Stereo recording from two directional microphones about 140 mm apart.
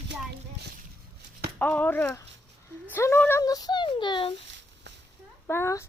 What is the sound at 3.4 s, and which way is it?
Speech, 25° left (ahead or behind).